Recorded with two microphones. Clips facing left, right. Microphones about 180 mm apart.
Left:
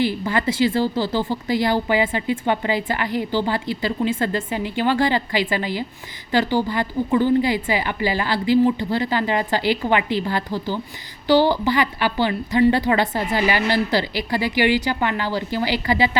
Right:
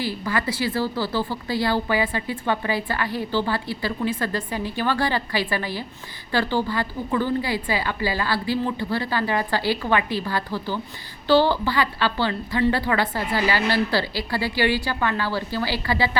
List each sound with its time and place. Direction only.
0.0 s a woman's voice: 20° left (ahead or behind)